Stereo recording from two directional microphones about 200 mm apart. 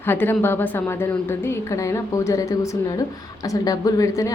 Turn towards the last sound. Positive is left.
turn(degrees=15)  # may be behind; listen again after turning